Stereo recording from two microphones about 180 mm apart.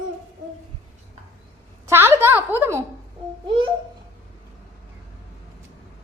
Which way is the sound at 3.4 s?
25° right (ahead or behind).